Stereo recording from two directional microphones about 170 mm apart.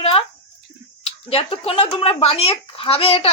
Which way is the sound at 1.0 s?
35° left (ahead or behind).